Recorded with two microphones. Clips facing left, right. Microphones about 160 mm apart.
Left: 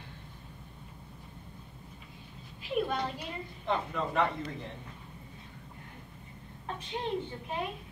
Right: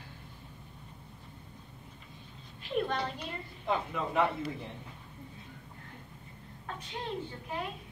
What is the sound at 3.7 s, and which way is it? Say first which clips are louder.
Speech: even; 5° right (ahead or behind).